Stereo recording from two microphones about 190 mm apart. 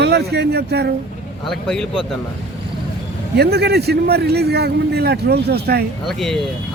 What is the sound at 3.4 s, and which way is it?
A man's voice, 60° right (ahead or behind).